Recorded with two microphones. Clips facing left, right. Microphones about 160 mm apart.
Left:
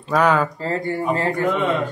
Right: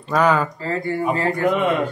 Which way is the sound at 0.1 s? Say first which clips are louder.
Even; centre (ahead or behind).